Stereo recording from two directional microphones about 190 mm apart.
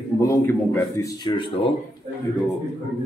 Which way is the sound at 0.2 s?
15° left (ahead or behind).